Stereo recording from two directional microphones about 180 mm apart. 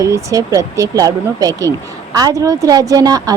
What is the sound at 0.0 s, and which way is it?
Speech, 20° right (ahead or behind).